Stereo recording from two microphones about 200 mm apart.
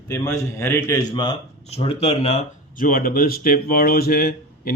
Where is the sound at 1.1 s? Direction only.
25° left (ahead or behind).